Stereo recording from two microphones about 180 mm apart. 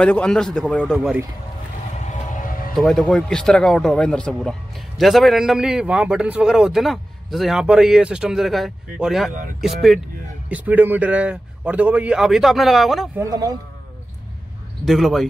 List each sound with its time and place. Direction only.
0.0 s speech: 5° left (ahead or behind)
0.9 s a man's voice: 10° right (ahead or behind)
2.0 s a sound: 40° left (ahead or behind)
2.7 s a man's voice: 5° left (ahead or behind)
13.2 s a man's voice: 20° right (ahead or behind)
14.9 s speech: centre (ahead or behind)